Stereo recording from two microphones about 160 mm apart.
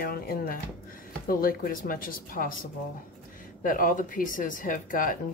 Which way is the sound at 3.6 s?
60° left (ahead or behind).